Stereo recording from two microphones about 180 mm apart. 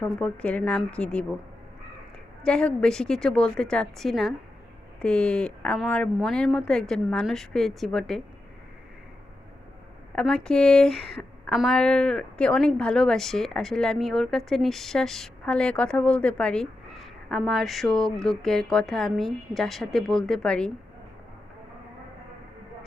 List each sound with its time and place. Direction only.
0.0 s speech: 5° left (ahead or behind)
2.4 s a woman's voice: 5° left (ahead or behind)
10.2 s a woman's voice: 5° left (ahead or behind)